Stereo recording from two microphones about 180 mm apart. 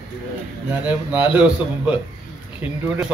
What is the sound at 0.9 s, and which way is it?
Speech, 10° right (ahead or behind).